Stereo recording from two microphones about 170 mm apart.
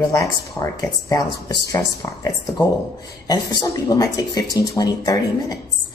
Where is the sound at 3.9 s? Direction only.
25° left (ahead or behind).